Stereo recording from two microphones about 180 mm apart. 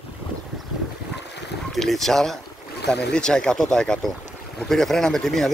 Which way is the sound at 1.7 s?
Centre (ahead or behind).